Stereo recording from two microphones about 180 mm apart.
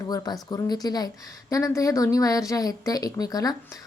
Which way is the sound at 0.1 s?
20° left (ahead or behind).